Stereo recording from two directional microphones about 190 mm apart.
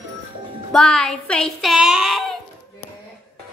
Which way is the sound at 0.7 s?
Centre (ahead or behind).